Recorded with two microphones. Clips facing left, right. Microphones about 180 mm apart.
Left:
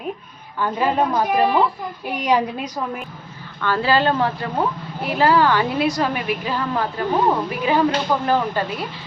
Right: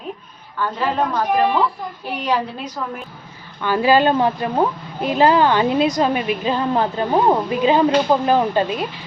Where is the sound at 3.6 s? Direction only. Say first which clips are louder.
Right 3 dB; 15° right (ahead or behind).